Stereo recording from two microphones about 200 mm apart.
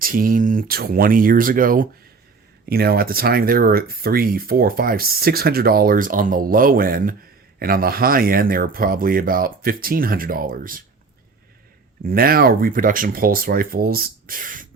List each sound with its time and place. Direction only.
0.0 s speech: 45° right (ahead or behind)
12.0 s speech: 45° right (ahead or behind)